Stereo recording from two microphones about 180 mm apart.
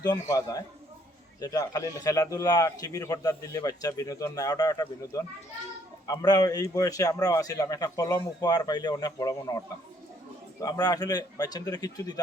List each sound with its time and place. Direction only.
0.0 s speech: 20° left (ahead or behind)